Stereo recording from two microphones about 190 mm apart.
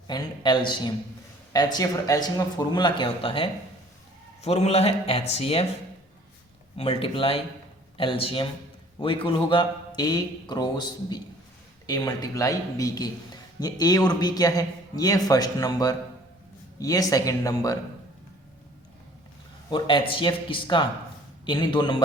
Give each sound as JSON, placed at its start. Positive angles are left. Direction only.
{"t": 0.1, "sound": "a man's voice", "side_deg": 20}
{"t": 6.7, "sound": "a man's voice", "side_deg": 30}
{"t": 19.7, "sound": "a man's voice", "side_deg": 25}